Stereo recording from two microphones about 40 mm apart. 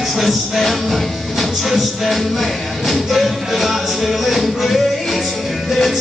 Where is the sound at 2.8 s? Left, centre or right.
Centre.